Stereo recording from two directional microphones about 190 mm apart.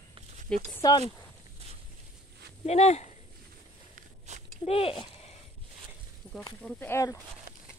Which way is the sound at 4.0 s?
40° right (ahead or behind).